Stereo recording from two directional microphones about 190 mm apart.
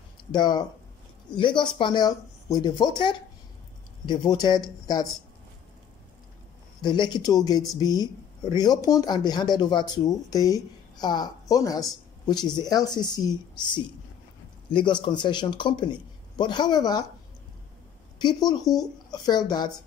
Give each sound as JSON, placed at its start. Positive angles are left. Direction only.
{"t": 0.3, "sound": "speech", "side_deg": 20}
{"t": 6.8, "sound": "speech", "side_deg": 25}
{"t": 18.2, "sound": "speech", "side_deg": 20}